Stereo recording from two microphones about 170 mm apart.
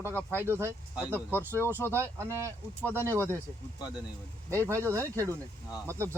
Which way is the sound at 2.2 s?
15° right (ahead or behind).